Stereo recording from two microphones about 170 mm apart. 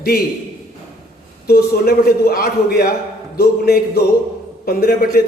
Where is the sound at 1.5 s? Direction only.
65° left (ahead or behind).